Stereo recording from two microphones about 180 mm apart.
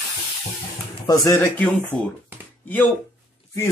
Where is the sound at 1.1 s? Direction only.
20° left (ahead or behind).